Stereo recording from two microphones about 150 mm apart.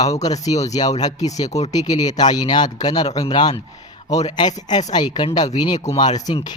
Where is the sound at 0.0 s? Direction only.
25° left (ahead or behind).